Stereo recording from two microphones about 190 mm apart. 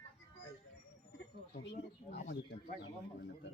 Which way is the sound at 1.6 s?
65° left (ahead or behind).